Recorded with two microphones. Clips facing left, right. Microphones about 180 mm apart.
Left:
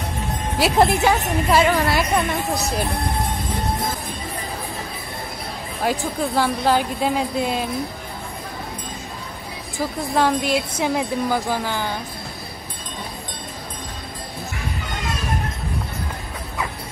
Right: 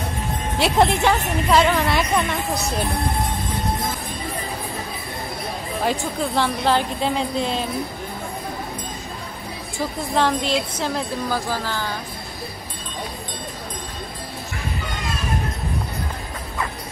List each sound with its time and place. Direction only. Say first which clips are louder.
0.6 s a woman's voice: left 1 dB; 5° left (ahead or behind)
5.9 s a woman's voice: left 2 dB; 10° left (ahead or behind)
10.1 s a woman's voice: left 1 dB; 10° left (ahead or behind)